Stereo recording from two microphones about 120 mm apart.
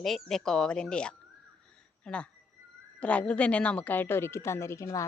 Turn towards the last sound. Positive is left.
turn(degrees=25)  # may be behind; listen again after turning